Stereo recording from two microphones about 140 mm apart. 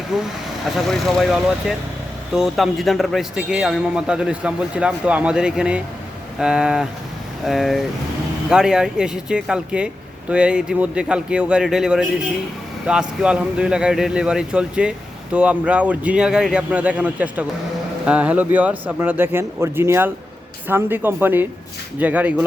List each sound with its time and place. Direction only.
0.1 s a man's voice: 5° right (ahead or behind)